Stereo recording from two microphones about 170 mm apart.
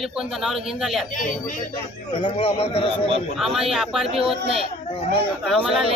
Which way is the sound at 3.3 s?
Centre (ahead or behind).